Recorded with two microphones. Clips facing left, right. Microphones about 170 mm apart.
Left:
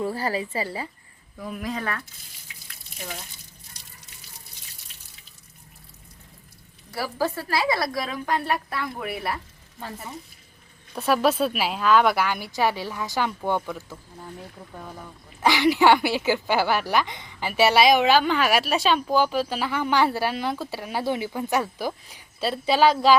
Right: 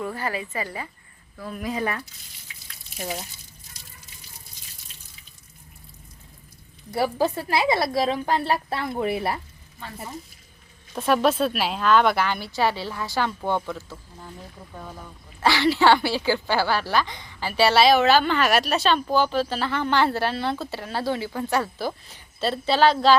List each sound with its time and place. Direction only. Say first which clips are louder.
0.0 s a woman's voice: left 3 dB; 35° left (ahead or behind)
1.5 s speech: right 2 dB; centre (ahead or behind)
1.8 s speech: right 3 dB; 20° right (ahead or behind)
6.9 s a woman's voice: right 4 dB; 20° right (ahead or behind)
10.9 s a woman's voice: right 1 dB; 5° left (ahead or behind)
15.4 s a woman's voice: left 1 dB; 15° left (ahead or behind)